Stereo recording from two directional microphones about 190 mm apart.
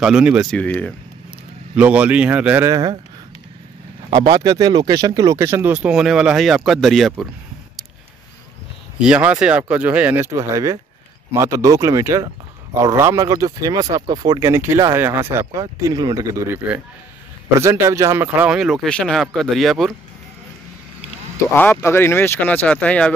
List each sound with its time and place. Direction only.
0.0 s speech: 5° right (ahead or behind)
1.8 s speech: 5° right (ahead or behind)
4.1 s speech: 20° right (ahead or behind); by 7.2 s centre (ahead or behind)
9.0 s speech: 5° right (ahead or behind)
21.4 s speech: 10° left (ahead or behind)